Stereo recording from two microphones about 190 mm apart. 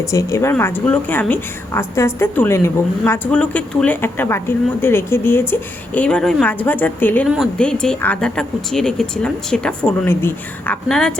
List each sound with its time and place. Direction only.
0.0 s a woman's voice: 15° left (ahead or behind)